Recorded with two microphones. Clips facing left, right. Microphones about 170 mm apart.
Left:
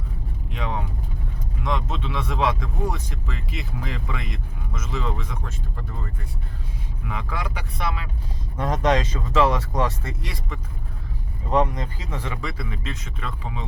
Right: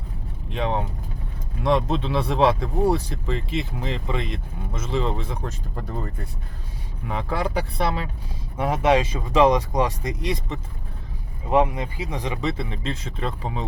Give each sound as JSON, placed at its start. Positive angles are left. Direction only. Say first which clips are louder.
{"t": 0.5, "sound": "speech", "louder": "right 5 dB", "side_deg": -30}
{"t": 7.1, "sound": "speech", "louder": "right 6 dB", "side_deg": -30}
{"t": 8.5, "sound": "speech", "louder": "right 2 dB", "side_deg": -10}